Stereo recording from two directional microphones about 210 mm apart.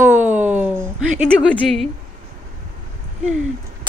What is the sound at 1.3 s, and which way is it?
Speech, 5° left (ahead or behind).